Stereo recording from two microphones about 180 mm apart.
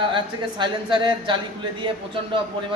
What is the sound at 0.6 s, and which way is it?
Speech, 25° right (ahead or behind).